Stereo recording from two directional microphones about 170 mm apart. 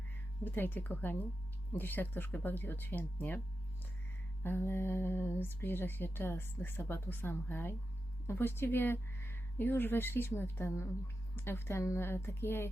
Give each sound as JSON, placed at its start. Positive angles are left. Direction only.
{"t": 0.4, "sound": "speech", "side_deg": 10}
{"t": 4.4, "sound": "speech", "side_deg": 15}